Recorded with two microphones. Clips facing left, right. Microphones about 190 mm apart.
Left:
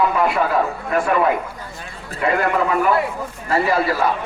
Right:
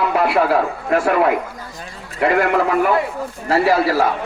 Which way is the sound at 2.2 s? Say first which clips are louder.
Right 3 dB; 70° right (ahead or behind).